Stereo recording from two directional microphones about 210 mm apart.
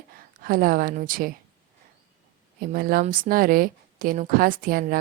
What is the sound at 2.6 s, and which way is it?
Speech, 45° right (ahead or behind).